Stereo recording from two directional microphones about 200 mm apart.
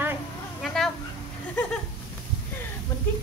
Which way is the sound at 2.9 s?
15° left (ahead or behind).